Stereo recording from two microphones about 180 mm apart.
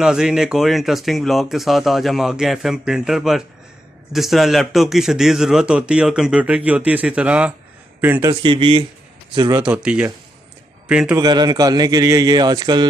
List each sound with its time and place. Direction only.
0.0 s speech: 5° right (ahead or behind)
8.2 s a man's voice: 25° right (ahead or behind)
9.6 s speech: 5° right (ahead or behind)
11.1 s a man's voice: 25° right (ahead or behind)